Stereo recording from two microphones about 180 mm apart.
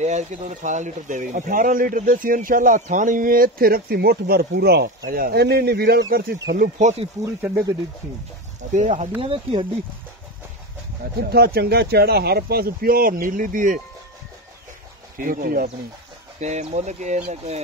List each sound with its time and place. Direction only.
0.0 s a man's voice: 40° right (ahead or behind); by 6.5 s 60° right (ahead or behind)
6.5 s a man's voice: 45° right (ahead or behind)
8.7 s a man's voice: 40° right (ahead or behind)
9.2 s speech: 30° right (ahead or behind)
11.1 s speech: 60° right (ahead or behind)
15.1 s a man's voice: 50° right (ahead or behind)
16.3 s speech: 40° right (ahead or behind)